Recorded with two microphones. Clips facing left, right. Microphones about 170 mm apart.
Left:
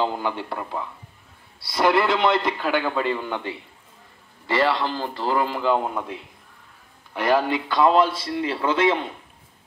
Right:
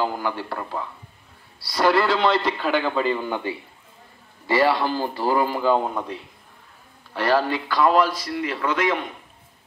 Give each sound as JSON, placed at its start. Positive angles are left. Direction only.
{"t": 0.0, "sound": "a man's voice", "side_deg": 20}
{"t": 7.2, "sound": "a man's voice", "side_deg": 20}